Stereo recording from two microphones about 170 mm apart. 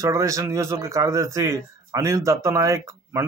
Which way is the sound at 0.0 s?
20° right (ahead or behind).